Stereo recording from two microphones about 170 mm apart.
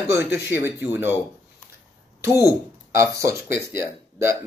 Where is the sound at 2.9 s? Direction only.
15° right (ahead or behind).